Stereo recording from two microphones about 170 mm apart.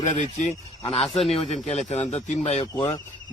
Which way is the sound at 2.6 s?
15° left (ahead or behind).